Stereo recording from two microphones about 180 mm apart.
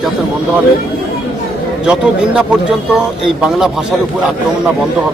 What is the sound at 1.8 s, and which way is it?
Speech, 5° right (ahead or behind).